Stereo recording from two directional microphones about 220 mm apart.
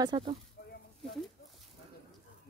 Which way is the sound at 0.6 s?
50° left (ahead or behind).